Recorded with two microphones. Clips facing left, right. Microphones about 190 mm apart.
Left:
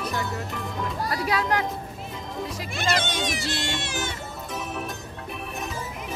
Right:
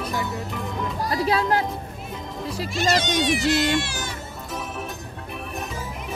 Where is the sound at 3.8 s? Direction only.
20° left (ahead or behind).